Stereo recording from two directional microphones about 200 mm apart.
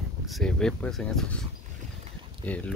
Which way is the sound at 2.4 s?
5° left (ahead or behind).